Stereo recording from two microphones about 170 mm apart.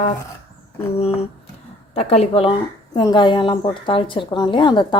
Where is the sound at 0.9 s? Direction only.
35° left (ahead or behind).